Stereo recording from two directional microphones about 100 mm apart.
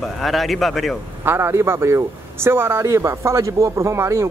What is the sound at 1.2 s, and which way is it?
Speech, 25° right (ahead or behind).